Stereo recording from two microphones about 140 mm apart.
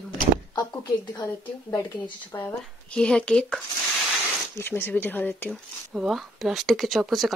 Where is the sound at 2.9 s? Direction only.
5° left (ahead or behind).